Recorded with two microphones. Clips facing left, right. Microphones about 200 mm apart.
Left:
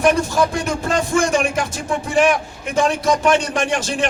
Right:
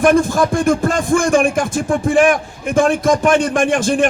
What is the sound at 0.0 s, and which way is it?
Speech, 50° right (ahead or behind).